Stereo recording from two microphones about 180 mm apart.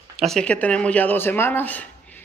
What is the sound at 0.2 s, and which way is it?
Speech, 5° left (ahead or behind).